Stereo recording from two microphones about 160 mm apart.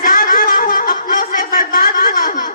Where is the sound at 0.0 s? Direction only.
60° left (ahead or behind).